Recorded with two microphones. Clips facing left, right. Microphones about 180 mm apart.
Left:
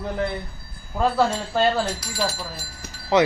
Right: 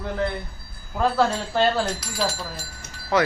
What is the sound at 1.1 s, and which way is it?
Speech, centre (ahead or behind).